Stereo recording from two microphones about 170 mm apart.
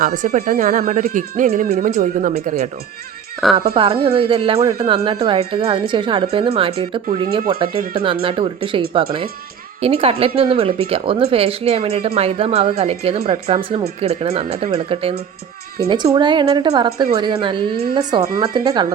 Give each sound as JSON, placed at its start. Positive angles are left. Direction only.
{"t": 0.0, "sound": "speech", "side_deg": -50}
{"t": 3.4, "sound": "speech", "side_deg": 0}
{"t": 4.0, "sound": "a woman's voice", "side_deg": -30}